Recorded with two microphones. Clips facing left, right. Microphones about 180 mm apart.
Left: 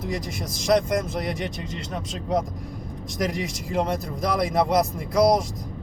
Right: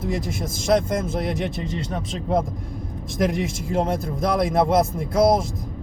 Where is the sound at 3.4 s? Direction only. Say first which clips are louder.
Right 2 dB; 50° right (ahead or behind).